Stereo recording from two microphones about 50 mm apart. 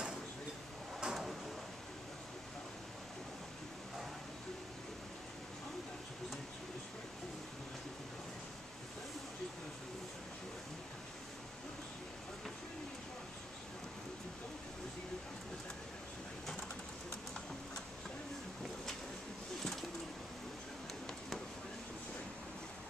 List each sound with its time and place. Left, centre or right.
1.0 s drawer open or close: centre